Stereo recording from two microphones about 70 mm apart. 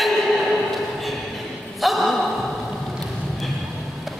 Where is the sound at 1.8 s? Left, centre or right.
Centre.